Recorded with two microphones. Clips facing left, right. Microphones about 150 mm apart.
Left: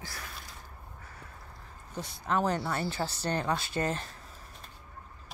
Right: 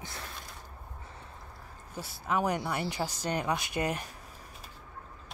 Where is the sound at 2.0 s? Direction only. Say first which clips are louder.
Left 1 dB; 5° right (ahead or behind).